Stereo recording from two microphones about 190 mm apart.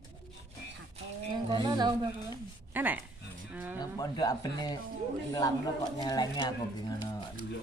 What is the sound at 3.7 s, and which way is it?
Speech, 20° left (ahead or behind).